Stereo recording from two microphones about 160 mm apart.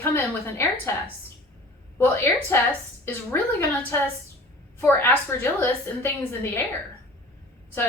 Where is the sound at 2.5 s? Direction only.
15° left (ahead or behind).